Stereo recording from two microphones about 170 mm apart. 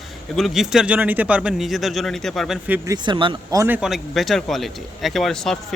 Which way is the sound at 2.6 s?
15° right (ahead or behind).